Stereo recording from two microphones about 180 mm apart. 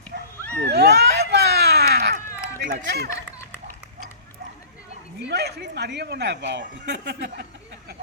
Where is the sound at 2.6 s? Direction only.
70° right (ahead or behind).